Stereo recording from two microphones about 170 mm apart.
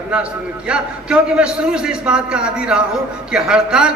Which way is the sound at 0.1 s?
5° right (ahead or behind).